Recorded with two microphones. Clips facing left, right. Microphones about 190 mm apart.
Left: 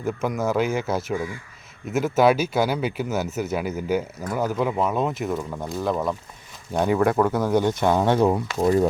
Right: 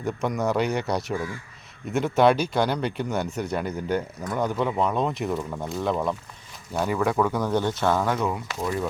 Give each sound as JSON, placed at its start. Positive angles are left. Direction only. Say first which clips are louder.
{"t": 0.0, "sound": "speech", "louder": "left 1 dB", "side_deg": 0}
{"t": 8.0, "sound": "speech", "louder": "left 6 dB", "side_deg": 30}